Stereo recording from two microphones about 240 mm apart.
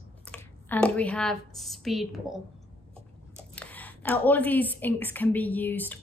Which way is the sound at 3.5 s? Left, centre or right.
Centre.